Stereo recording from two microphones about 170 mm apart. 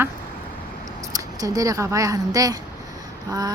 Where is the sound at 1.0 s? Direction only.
20° right (ahead or behind).